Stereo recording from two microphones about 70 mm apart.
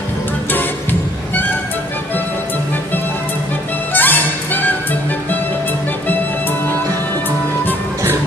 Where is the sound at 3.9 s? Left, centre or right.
Left.